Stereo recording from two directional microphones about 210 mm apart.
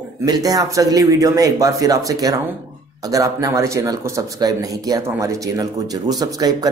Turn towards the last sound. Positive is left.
turn(degrees=-20)  # may be behind; listen again after turning